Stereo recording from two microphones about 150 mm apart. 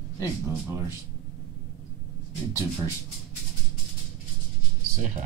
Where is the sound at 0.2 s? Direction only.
20° right (ahead or behind).